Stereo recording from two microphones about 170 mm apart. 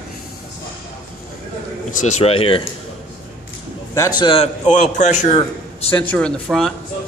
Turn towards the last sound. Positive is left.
turn(degrees=5)  # may be behind; listen again after turning